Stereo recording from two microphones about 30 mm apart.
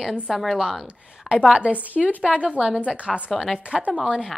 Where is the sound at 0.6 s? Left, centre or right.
Centre.